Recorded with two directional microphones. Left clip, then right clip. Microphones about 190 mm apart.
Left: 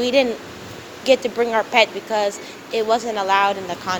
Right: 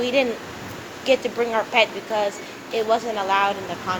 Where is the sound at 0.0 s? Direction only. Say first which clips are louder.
Left 3 dB; 45° left (ahead or behind).